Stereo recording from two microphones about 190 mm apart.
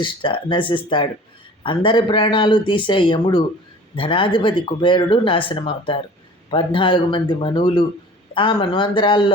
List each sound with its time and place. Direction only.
0.0 s speech: 25° left (ahead or behind)